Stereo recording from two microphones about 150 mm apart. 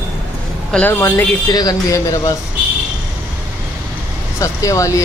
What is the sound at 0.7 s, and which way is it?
Speech, 15° left (ahead or behind).